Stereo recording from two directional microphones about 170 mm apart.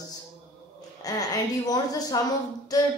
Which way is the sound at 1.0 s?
20° left (ahead or behind).